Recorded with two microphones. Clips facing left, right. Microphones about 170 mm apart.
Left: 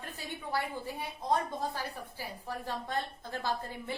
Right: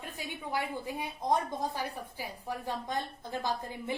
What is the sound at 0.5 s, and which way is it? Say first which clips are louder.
A woman's voice: right 1 dB; 15° right (ahead or behind).